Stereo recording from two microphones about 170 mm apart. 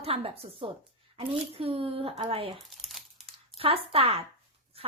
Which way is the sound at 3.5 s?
35° right (ahead or behind).